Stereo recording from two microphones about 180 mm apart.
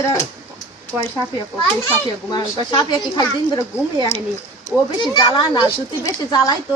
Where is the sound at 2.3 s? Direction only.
25° left (ahead or behind).